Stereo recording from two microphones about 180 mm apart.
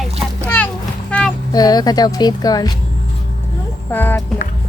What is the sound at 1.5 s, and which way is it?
Speech, 20° left (ahead or behind).